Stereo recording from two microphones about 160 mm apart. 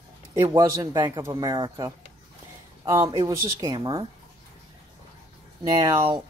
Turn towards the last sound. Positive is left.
turn(degrees=-30)  # may be behind; listen again after turning